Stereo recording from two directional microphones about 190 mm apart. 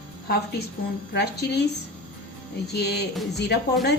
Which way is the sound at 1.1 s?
60° left (ahead or behind).